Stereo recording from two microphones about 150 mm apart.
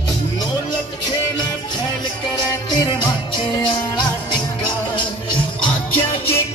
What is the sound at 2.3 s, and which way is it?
Music, 30° left (ahead or behind).